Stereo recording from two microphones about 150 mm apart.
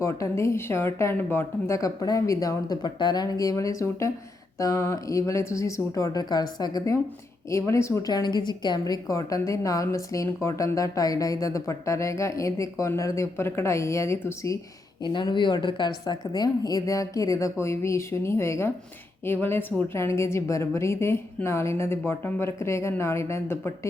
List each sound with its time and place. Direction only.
0.0 s a woman's voice: 20° left (ahead or behind)
15.0 s a woman's voice: 30° left (ahead or behind)